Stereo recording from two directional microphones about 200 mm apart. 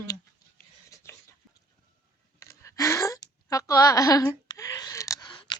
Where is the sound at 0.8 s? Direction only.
15° left (ahead or behind).